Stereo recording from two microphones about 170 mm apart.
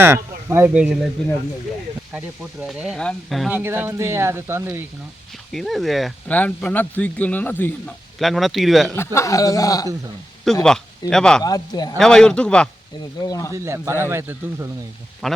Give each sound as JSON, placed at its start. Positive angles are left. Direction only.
{"t": 0.0, "sound": "speech", "side_deg": -15}
{"t": 2.1, "sound": "speech", "side_deg": -5}
{"t": 3.5, "sound": "speech", "side_deg": -10}
{"t": 5.5, "sound": "speech", "side_deg": 0}
{"t": 8.2, "sound": "speech", "side_deg": 0}
{"t": 9.1, "sound": "a man's voice", "side_deg": 20}
{"t": 10.4, "sound": "speech", "side_deg": 0}
{"t": 11.4, "sound": "a man's voice", "side_deg": 20}
{"t": 11.9, "sound": "speech", "side_deg": 5}
{"t": 13.1, "sound": "a man's voice", "side_deg": 20}
{"t": 13.5, "sound": "speech", "side_deg": -15}
{"t": 15.2, "sound": "speech", "side_deg": 0}